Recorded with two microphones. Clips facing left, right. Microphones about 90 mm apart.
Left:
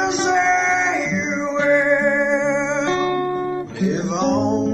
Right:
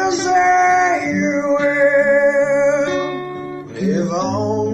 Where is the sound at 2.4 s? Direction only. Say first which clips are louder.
Right 5 dB; 5° right (ahead or behind).